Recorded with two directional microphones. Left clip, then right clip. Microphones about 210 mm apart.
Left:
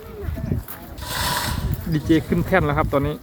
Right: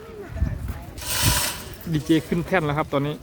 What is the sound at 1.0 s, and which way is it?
Pulleys, 60° right (ahead or behind).